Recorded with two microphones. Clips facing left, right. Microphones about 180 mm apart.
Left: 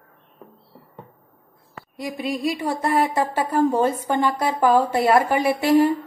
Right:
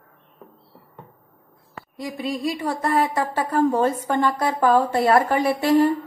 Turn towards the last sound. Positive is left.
turn(degrees=10)  # may be behind; listen again after turning